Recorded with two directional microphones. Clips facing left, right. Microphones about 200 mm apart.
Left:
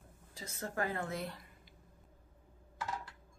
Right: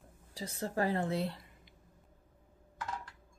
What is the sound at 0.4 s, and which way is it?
A woman's voice, 30° right (ahead or behind).